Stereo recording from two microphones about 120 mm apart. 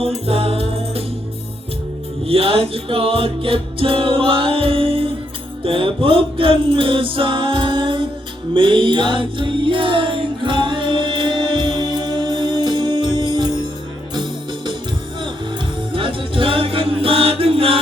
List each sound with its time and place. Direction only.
0.3 s music: 55° right (ahead or behind)
2.2 s music: 50° right (ahead or behind)
15.9 s music: 45° right (ahead or behind)